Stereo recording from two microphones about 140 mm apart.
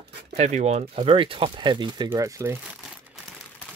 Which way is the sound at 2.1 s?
25° right (ahead or behind).